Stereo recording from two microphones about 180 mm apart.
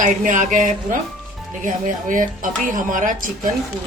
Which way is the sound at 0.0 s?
45° right (ahead or behind).